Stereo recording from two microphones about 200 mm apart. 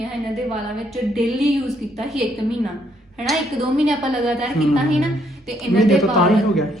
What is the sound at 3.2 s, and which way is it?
A woman's voice, centre (ahead or behind).